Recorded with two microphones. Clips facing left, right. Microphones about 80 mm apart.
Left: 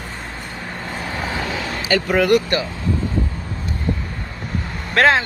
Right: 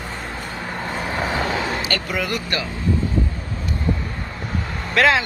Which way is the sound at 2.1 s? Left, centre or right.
Left.